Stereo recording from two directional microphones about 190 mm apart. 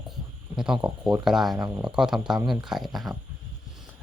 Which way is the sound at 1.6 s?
15° right (ahead or behind).